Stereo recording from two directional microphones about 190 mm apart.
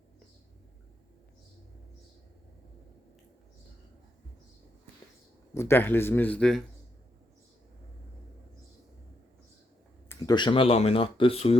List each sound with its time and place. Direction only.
5.5 s speech: 10° left (ahead or behind)
10.1 s speech: 20° left (ahead or behind)